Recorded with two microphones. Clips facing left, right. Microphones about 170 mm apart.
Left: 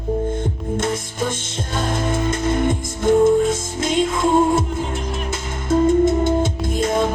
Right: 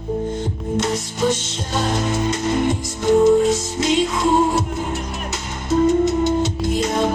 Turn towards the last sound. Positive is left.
turn(degrees=50)  # may be behind; listen again after turning